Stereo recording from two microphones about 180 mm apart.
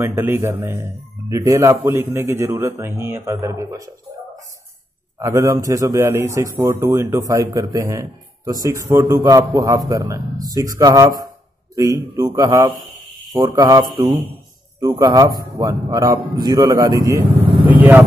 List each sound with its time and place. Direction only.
0.0 s speech: 15° right (ahead or behind)
5.2 s a man's voice: 20° right (ahead or behind)